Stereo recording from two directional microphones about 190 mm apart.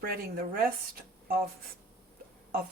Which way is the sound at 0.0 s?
55° right (ahead or behind).